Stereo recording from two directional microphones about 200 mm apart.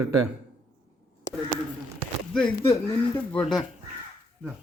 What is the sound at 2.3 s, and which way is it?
Speech, 5° left (ahead or behind).